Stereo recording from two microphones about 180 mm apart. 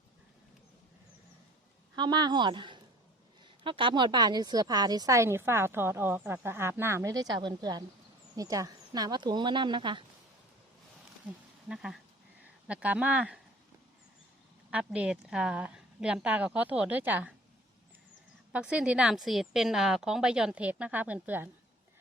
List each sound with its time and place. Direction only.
2.0 s a woman's voice: 25° right (ahead or behind)
11.7 s a woman's voice: 5° right (ahead or behind)
14.7 s a woman's voice: 5° right (ahead or behind)
18.5 s a woman's voice: 5° right (ahead or behind)